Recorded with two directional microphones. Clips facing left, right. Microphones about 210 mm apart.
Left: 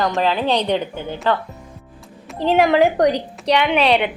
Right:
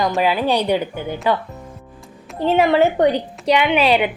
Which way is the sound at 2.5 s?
Centre (ahead or behind).